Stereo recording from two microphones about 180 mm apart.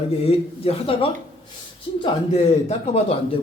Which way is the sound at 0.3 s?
30° left (ahead or behind).